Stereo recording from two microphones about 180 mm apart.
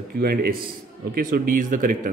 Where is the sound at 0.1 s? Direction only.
60° right (ahead or behind).